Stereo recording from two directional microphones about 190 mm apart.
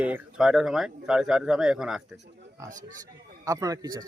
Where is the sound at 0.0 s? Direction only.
5° right (ahead or behind).